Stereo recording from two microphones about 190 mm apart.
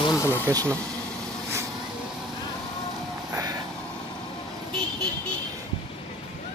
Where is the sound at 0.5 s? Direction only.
20° right (ahead or behind).